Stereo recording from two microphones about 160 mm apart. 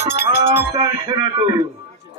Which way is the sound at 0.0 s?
90° left.